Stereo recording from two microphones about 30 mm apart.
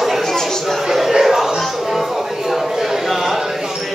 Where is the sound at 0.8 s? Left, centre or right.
Centre.